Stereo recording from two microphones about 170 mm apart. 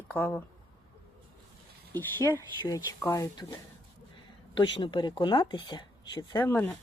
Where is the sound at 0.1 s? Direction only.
15° left (ahead or behind).